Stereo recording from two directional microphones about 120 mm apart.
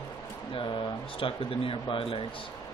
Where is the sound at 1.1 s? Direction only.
50° left (ahead or behind).